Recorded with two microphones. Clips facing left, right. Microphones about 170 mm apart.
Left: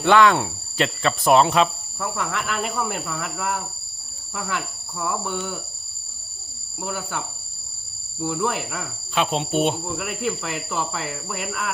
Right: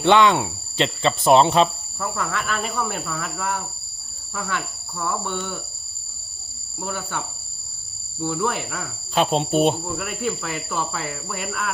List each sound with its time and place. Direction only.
0.0 s speech: 20° right (ahead or behind)
1.6 s speech: centre (ahead or behind)
6.8 s speech: centre (ahead or behind)
9.1 s speech: 35° right (ahead or behind)
9.7 s speech: centre (ahead or behind)